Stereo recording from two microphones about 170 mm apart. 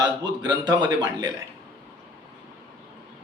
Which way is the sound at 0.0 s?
25° right (ahead or behind).